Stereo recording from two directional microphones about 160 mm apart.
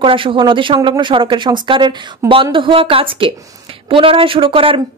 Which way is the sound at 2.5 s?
30° right (ahead or behind).